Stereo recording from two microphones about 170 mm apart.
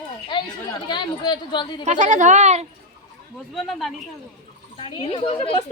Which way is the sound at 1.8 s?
45° right (ahead or behind).